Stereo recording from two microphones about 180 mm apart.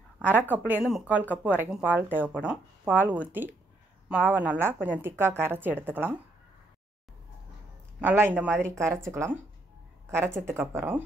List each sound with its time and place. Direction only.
0.2 s a woman's voice: 10° right (ahead or behind)
8.0 s a woman's voice: 10° right (ahead or behind)
10.4 s a woman's voice: 15° right (ahead or behind)